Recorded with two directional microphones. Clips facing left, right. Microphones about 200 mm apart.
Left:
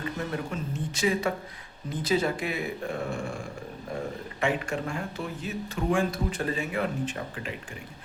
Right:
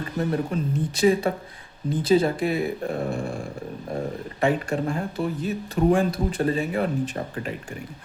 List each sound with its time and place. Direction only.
0.2 s speech: 35° right (ahead or behind)